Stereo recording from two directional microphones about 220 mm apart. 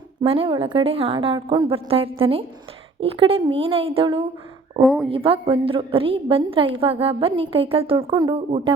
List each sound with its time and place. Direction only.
0.3 s a woman's voice: 25° right (ahead or behind)
4.8 s a woman's voice: centre (ahead or behind)
5.0 s a woman's voice: 25° right (ahead or behind)